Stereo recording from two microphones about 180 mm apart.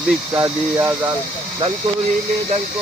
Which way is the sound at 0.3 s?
15° right (ahead or behind).